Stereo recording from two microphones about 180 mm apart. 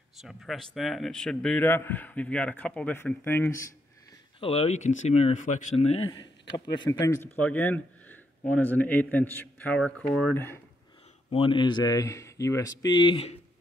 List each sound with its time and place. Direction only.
0.2 s a man's voice: centre (ahead or behind)
4.4 s speech: 30° left (ahead or behind)
7.3 s a man's voice: 10° left (ahead or behind)
11.2 s a man's voice: 30° left (ahead or behind)